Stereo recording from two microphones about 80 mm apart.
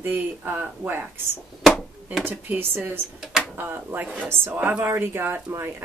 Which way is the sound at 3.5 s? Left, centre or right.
Right.